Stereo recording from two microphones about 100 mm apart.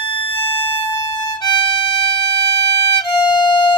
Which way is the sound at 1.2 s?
45° left (ahead or behind).